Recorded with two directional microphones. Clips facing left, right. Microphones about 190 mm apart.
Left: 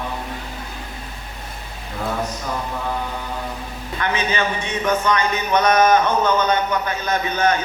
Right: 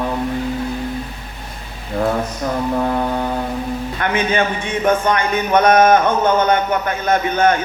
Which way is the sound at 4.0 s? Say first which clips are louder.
Right 3 dB; 55° right (ahead or behind).